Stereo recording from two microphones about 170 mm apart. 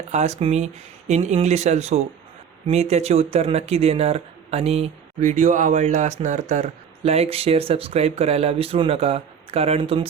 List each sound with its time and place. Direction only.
0.1 s speech: 40° right (ahead or behind)